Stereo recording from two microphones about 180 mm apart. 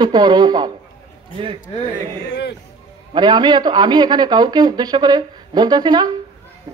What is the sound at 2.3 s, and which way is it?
Speech, 70° left (ahead or behind).